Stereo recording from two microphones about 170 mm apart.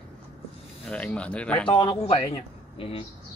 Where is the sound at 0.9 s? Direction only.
5° left (ahead or behind).